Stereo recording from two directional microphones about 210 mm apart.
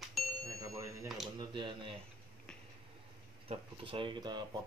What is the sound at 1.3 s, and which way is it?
Speech, 20° right (ahead or behind).